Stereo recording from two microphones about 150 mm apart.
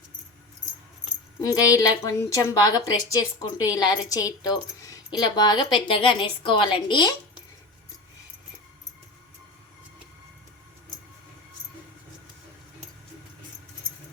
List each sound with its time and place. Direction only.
1.4 s a woman's voice: 25° left (ahead or behind)